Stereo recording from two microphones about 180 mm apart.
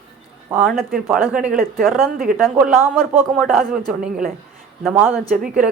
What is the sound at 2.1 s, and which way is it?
Speech, 50° right (ahead or behind).